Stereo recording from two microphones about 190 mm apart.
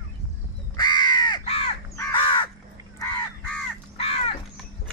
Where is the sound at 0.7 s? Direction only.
25° left (ahead or behind).